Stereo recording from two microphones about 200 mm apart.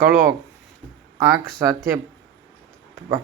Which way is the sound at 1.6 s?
10° right (ahead or behind).